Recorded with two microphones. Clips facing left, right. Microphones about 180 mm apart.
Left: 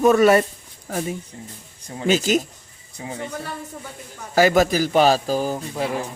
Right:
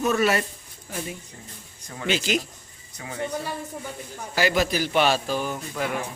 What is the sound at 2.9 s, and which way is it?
Speech, 30° left (ahead or behind).